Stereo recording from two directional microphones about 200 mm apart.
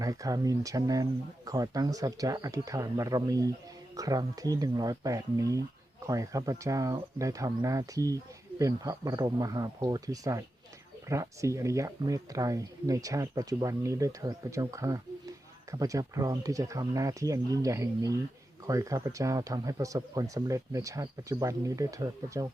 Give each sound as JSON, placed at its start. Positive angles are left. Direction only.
{"t": 0.0, "sound": "speech", "side_deg": -15}